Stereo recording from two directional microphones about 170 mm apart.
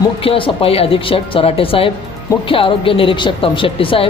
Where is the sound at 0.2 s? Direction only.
30° left (ahead or behind).